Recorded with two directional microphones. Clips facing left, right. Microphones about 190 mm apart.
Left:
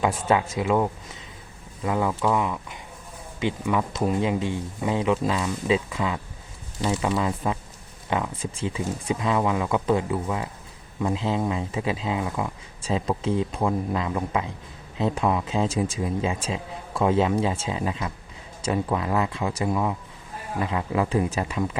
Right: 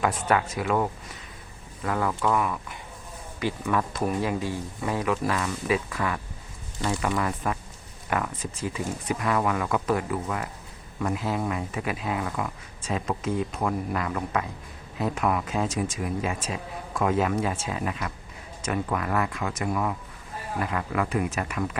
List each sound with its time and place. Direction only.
0.0 s speech: 25° left (ahead or behind)